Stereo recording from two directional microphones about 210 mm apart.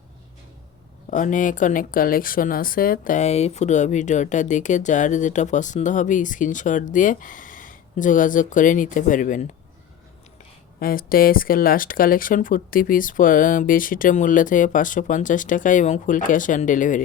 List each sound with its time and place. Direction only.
1.1 s speech: 40° left (ahead or behind)
10.8 s speech: 45° left (ahead or behind)